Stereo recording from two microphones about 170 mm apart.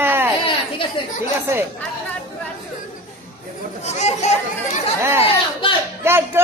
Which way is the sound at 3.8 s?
40° left (ahead or behind).